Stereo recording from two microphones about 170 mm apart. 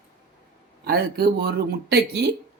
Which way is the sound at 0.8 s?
65° right (ahead or behind).